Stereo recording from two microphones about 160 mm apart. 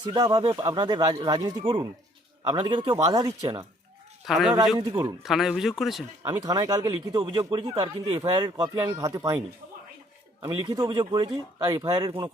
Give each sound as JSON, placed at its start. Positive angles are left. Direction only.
{"t": 0.1, "sound": "speech", "side_deg": -25}
{"t": 4.3, "sound": "speech", "side_deg": 0}
{"t": 4.8, "sound": "speech", "side_deg": -25}
{"t": 5.2, "sound": "speech", "side_deg": 0}
{"t": 6.4, "sound": "speech", "side_deg": -25}
{"t": 10.4, "sound": "speech", "side_deg": -25}